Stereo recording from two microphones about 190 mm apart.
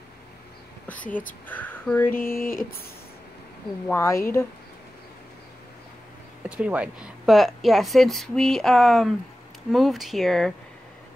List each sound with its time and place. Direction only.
1.5 s speech: 10° left (ahead or behind)
2.1 s speech: 50° left (ahead or behind)
3.8 s speech: 10° left (ahead or behind)
6.4 s a woman's voice: 5° right (ahead or behind)